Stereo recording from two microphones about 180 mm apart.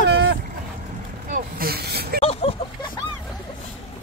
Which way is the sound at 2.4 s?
30° left (ahead or behind).